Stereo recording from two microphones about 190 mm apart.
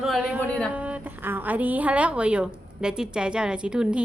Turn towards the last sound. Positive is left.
turn(degrees=-5)  # may be behind; listen again after turning